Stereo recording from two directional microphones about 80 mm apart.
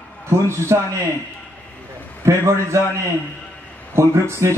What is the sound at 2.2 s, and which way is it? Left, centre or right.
Speech, right.